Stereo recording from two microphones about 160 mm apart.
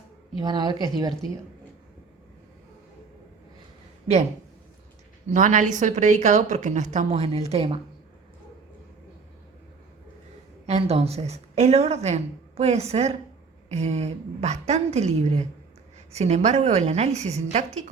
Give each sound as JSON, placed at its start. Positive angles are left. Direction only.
{"t": 0.3, "sound": "speech", "side_deg": -25}
{"t": 5.3, "sound": "a woman's voice", "side_deg": -50}
{"t": 10.7, "sound": "a woman's voice", "side_deg": -40}